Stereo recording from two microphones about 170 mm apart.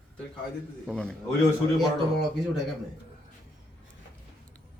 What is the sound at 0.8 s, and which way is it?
Speech, 5° left (ahead or behind).